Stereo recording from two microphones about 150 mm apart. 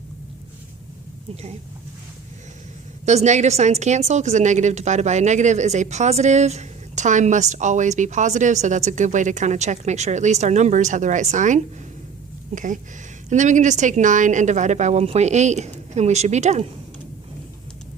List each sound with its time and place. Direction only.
3.1 s speech: 50° right (ahead or behind)